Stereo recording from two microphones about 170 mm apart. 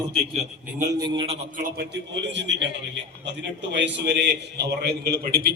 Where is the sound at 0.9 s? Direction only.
25° right (ahead or behind).